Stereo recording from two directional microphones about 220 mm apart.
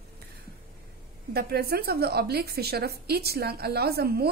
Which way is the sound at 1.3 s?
45° right (ahead or behind).